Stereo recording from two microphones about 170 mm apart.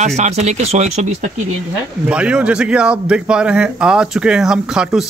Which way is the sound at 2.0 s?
5° right (ahead or behind).